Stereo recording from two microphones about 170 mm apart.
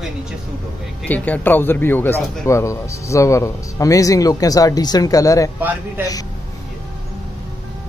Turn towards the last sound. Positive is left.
turn(degrees=-10)  # may be behind; listen again after turning